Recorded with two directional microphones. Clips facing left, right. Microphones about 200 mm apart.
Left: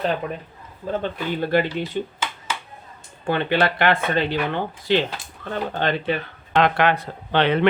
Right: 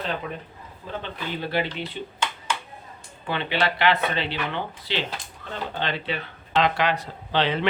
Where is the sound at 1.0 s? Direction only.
50° left (ahead or behind).